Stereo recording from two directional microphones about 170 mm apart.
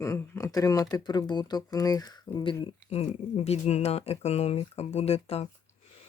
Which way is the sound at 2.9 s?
40° left (ahead or behind).